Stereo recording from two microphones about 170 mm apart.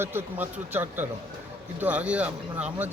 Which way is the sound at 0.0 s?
15° right (ahead or behind).